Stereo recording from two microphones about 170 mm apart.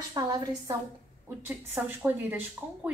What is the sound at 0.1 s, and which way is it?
Speech, 20° right (ahead or behind).